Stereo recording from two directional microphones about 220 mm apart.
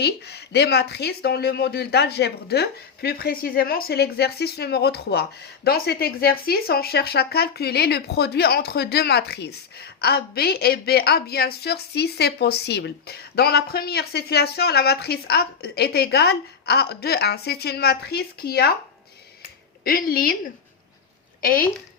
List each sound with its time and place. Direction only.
0.0 s speech: 50° left (ahead or behind)
19.4 s a sound: 40° left (ahead or behind)
21.4 s speech: 40° left (ahead or behind)